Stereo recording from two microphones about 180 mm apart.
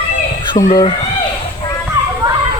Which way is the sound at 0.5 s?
20° left (ahead or behind).